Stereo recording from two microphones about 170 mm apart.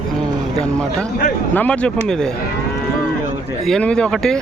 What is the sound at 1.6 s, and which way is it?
Speech, 5° left (ahead or behind).